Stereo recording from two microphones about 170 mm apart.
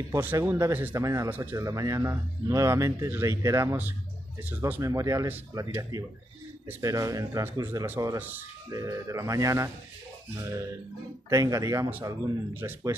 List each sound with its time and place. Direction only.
0.1 s speech: 15° right (ahead or behind)
11.2 s speech: 15° right (ahead or behind)